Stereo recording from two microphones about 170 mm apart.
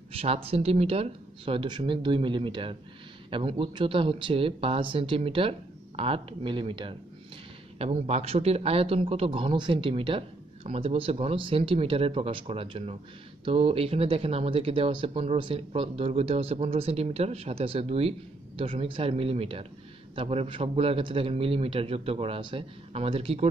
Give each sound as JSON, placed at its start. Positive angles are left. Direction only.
{"t": 0.1, "sound": "a man's voice", "side_deg": -35}